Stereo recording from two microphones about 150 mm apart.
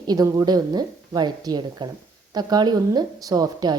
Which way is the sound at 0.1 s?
25° right (ahead or behind).